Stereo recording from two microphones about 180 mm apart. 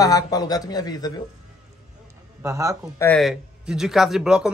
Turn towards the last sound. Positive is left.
turn(degrees=-5)  # may be behind; listen again after turning